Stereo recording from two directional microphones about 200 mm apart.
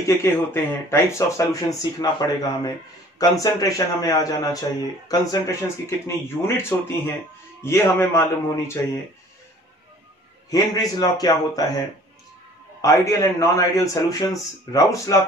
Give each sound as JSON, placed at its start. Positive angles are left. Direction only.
{"t": 0.0, "sound": "speech", "side_deg": 10}
{"t": 10.5, "sound": "a man's voice", "side_deg": 20}
{"t": 12.8, "sound": "speech", "side_deg": 15}